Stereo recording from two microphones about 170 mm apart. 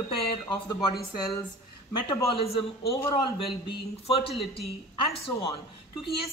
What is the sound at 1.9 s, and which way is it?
Speech, 25° left (ahead or behind).